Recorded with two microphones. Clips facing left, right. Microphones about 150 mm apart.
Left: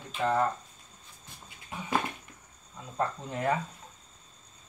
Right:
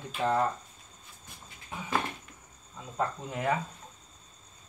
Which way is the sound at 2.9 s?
5° right (ahead or behind).